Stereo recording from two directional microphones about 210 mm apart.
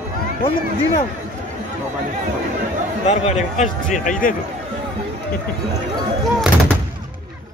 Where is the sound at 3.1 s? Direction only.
30° left (ahead or behind).